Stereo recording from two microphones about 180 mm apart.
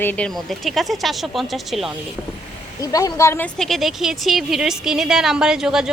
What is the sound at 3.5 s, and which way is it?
Speech, centre (ahead or behind).